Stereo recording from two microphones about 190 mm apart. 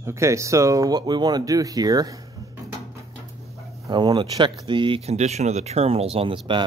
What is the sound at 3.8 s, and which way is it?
Speech, 25° right (ahead or behind).